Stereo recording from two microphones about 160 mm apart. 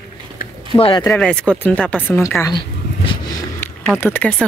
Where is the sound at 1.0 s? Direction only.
5° left (ahead or behind).